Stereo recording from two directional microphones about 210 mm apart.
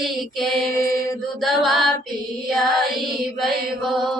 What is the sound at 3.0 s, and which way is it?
Music, centre (ahead or behind).